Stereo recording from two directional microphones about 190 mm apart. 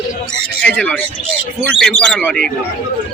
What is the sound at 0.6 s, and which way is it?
A man's voice, 5° left (ahead or behind).